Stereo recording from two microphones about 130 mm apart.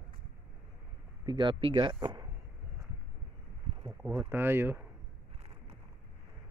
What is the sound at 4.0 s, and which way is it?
Speech, 15° right (ahead or behind).